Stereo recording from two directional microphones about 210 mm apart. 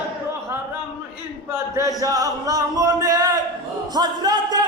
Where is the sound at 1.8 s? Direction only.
15° right (ahead or behind).